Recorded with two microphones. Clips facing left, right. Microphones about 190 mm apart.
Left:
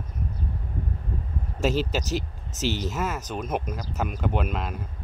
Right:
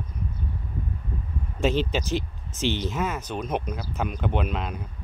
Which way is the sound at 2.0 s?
40° left (ahead or behind).